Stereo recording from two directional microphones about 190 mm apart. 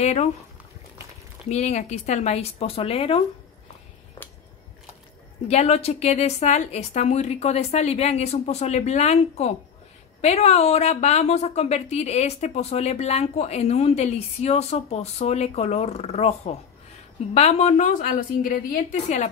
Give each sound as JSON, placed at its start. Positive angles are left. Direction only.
{"t": 0.0, "sound": "a woman's voice", "side_deg": 35}
{"t": 1.5, "sound": "a woman's voice", "side_deg": 35}
{"t": 5.5, "sound": "a woman's voice", "side_deg": 35}